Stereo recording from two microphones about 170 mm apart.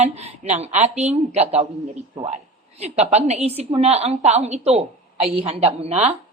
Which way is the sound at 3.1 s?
40° right (ahead or behind).